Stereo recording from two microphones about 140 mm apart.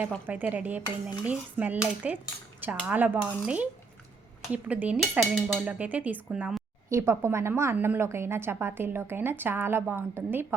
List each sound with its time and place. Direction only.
0.3 s a woman's voice: 10° right (ahead or behind)
6.9 s a woman's voice: 20° right (ahead or behind)